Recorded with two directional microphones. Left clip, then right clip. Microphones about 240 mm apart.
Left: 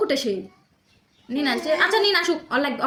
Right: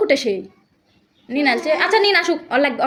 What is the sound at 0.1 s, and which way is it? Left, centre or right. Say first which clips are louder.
A woman's voice: right 6 dB; centre.